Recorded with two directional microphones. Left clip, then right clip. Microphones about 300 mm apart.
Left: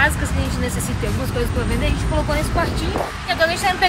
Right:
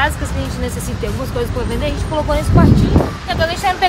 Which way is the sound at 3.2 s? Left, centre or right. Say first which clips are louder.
Left 2 dB; centre.